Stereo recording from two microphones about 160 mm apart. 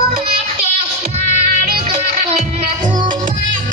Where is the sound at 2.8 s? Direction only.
55° right (ahead or behind).